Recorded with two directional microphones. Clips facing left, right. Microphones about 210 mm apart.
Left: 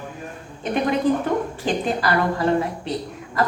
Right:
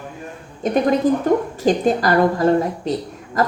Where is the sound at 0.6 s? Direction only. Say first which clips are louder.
Right 4 dB; 40° right (ahead or behind).